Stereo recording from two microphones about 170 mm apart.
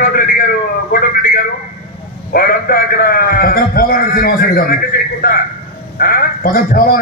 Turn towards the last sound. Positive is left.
turn(degrees=60)  # may be behind; listen again after turning